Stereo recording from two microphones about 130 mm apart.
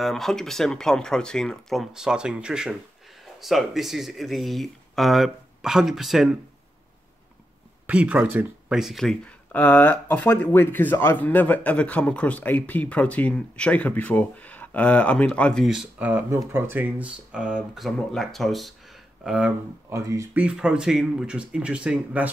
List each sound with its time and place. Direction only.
0.0 s speech: centre (ahead or behind)
7.8 s speech: 10° right (ahead or behind)
8.7 s speech: centre (ahead or behind)
16.1 s speech: 20° right (ahead or behind)
19.9 s speech: 25° right (ahead or behind)
20.3 s speech: 10° right (ahead or behind)